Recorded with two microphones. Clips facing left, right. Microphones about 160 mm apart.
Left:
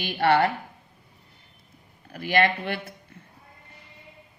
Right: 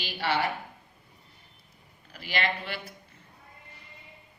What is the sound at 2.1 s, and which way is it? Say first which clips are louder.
Speech: left 8 dB; 50° left (ahead or behind).